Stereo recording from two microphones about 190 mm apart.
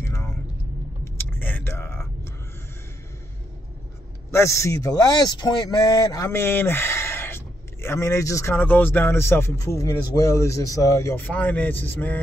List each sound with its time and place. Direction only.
0.0 s a sound: 15° left (ahead or behind)
1.0 s vehicle: 10° left (ahead or behind)
4.3 s speech: 15° left (ahead or behind)